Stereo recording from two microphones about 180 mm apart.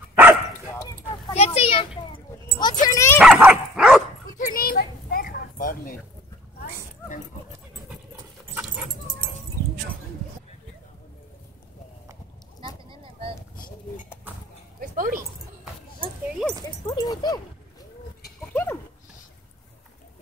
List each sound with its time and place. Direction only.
0.1 s dog: 10° right (ahead or behind)
1.3 s a sound: 35° left (ahead or behind)
2.6 s dog: 20° left (ahead or behind)
3.2 s dog: 5° right (ahead or behind)
4.4 s children playing: 55° left (ahead or behind)
12.9 s a sound: 30° right (ahead or behind)
14.8 s dog: 50° right (ahead or behind)
16.8 s a sound: 20° left (ahead or behind)
18.5 s goat: 10° left (ahead or behind)